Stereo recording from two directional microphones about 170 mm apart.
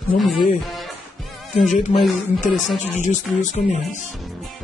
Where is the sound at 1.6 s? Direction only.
45° left (ahead or behind).